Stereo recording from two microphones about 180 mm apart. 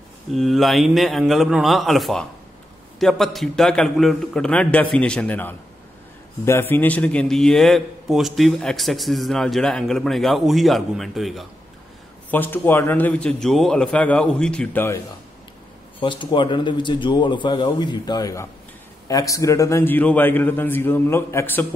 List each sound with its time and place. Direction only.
0.3 s a man's voice: centre (ahead or behind)
12.3 s a man's voice: 10° left (ahead or behind)
16.0 s a man's voice: 25° left (ahead or behind)